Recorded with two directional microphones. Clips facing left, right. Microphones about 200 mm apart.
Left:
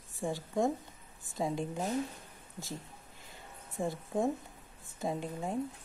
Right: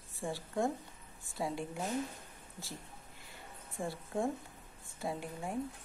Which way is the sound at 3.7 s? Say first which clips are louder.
Left 4 dB; 20° left (ahead or behind).